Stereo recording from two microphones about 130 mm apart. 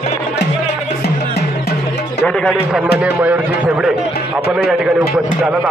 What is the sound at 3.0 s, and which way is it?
Speech, 10° right (ahead or behind).